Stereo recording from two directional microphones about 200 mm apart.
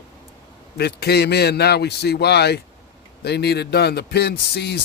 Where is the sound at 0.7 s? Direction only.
55° left (ahead or behind).